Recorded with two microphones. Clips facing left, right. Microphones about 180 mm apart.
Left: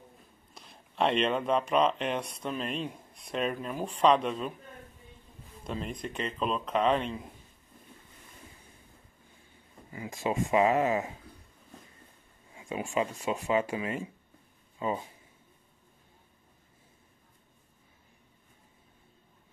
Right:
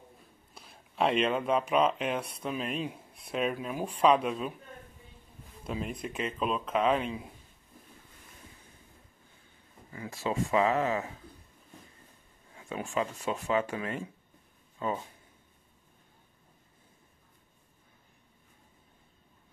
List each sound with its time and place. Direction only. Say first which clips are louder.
0.6 s speech: even; centre (ahead or behind)
5.6 s speech: even; 5° right (ahead or behind)
9.9 s speech: left 1 dB; 15° left (ahead or behind)
12.5 s speech: left 2 dB; 10° left (ahead or behind)